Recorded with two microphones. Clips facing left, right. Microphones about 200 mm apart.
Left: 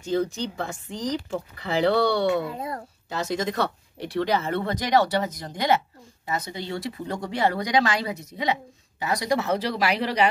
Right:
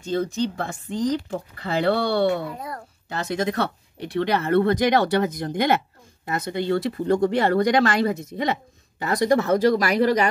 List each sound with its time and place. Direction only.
0.6 s speech: 55° right (ahead or behind)
2.5 s speech: 25° left (ahead or behind)
3.1 s speech: 60° right (ahead or behind)